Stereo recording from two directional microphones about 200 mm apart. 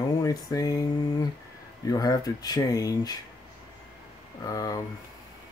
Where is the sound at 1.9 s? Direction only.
20° left (ahead or behind).